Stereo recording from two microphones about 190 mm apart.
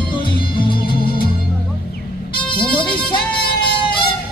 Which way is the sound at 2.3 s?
25° left (ahead or behind).